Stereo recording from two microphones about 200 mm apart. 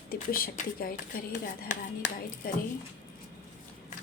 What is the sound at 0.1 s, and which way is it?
Speech, 45° left (ahead or behind).